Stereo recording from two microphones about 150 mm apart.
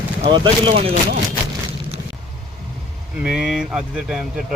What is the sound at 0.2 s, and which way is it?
Speech, 30° right (ahead or behind).